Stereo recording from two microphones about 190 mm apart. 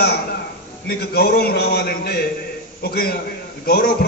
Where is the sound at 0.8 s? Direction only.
55° left (ahead or behind).